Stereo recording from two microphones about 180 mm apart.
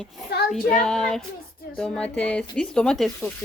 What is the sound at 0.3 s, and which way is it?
Child singing, 65° left (ahead or behind).